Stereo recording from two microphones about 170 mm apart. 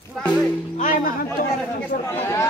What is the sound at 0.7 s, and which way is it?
Speech, 50° left (ahead or behind).